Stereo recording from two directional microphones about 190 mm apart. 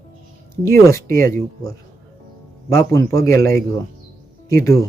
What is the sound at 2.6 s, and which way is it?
A man's voice, 15° left (ahead or behind).